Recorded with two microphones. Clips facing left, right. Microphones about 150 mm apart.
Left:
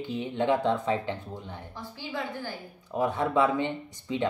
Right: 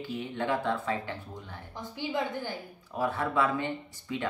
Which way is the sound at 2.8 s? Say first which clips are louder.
Left 3 dB; 20° left (ahead or behind).